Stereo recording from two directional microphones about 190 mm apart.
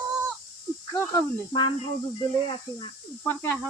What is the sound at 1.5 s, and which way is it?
Speech, 30° left (ahead or behind).